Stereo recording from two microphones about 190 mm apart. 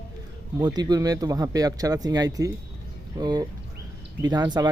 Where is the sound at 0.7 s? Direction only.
20° right (ahead or behind).